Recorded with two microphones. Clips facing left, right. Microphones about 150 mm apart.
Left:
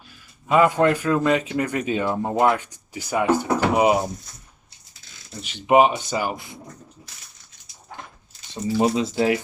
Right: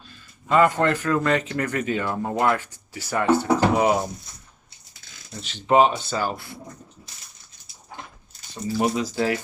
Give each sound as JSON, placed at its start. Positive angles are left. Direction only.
{"t": 0.1, "sound": "speech", "side_deg": 15}
{"t": 5.4, "sound": "speech", "side_deg": 10}
{"t": 8.8, "sound": "speech", "side_deg": 25}